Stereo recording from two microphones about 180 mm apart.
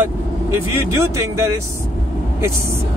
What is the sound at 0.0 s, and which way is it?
Speech, 15° right (ahead or behind).